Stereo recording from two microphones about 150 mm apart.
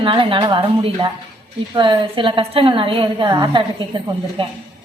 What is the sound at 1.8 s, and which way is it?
A woman's voice, 35° right (ahead or behind).